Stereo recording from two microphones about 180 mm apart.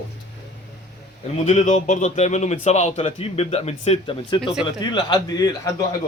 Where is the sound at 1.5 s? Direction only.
40° left (ahead or behind).